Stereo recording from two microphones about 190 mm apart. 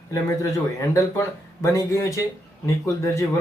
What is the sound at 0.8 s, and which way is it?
Speech, 15° left (ahead or behind).